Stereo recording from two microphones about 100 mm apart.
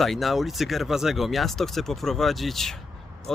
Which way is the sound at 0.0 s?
Centre (ahead or behind).